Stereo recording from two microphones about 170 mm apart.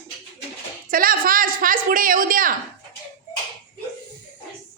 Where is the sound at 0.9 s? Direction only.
55° right (ahead or behind).